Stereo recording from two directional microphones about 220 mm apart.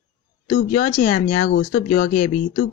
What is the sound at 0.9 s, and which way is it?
Speech, 35° left (ahead or behind).